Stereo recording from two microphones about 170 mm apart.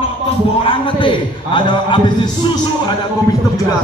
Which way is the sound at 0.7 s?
30° left (ahead or behind).